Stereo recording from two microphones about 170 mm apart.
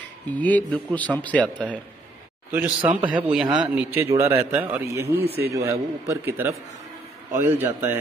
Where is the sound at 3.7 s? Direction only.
15° right (ahead or behind).